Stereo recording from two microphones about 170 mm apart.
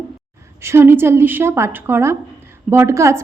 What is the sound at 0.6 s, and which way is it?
A woman's voice, 15° right (ahead or behind).